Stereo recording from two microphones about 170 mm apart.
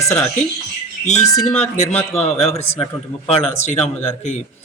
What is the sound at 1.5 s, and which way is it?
Speech, 40° left (ahead or behind).